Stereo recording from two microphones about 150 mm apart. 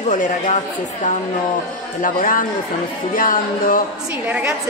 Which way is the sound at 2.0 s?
65° left (ahead or behind).